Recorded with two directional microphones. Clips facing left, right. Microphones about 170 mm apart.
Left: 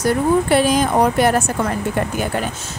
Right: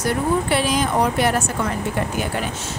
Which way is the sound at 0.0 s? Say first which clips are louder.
Left 4 dB; 45° left (ahead or behind).